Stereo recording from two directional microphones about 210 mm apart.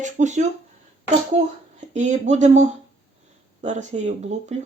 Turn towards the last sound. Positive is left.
turn(degrees=-35)  # may be behind; listen again after turning